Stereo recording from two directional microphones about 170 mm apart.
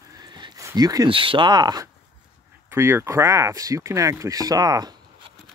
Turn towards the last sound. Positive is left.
turn(degrees=-20)  # may be behind; listen again after turning